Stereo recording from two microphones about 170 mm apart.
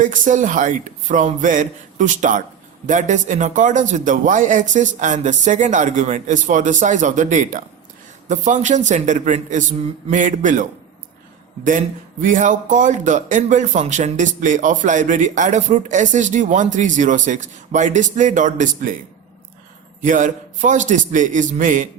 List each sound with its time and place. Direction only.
0.0 s a man's voice: 50° right (ahead or behind)
12.2 s a man's voice: 45° right (ahead or behind)
20.0 s a man's voice: 50° right (ahead or behind)